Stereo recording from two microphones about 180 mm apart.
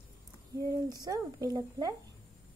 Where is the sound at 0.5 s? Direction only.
20° right (ahead or behind).